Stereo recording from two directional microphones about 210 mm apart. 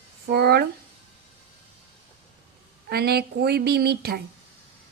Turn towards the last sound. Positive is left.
turn(degrees=-50)  # may be behind; listen again after turning